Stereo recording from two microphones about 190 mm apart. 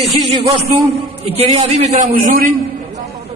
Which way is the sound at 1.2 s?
35° right (ahead or behind).